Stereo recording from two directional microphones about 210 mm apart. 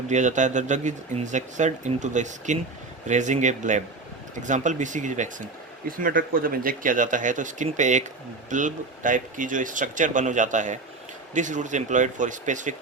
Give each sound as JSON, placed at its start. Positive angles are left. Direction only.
{"t": 0.1, "sound": "speech", "side_deg": -35}